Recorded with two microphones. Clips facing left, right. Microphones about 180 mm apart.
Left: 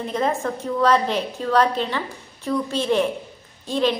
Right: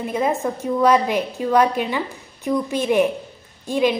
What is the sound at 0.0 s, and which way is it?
A woman's voice, 10° right (ahead or behind).